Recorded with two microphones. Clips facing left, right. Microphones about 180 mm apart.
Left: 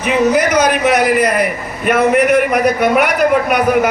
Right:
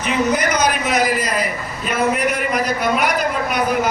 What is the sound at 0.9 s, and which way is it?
A man's voice, 65° left (ahead or behind).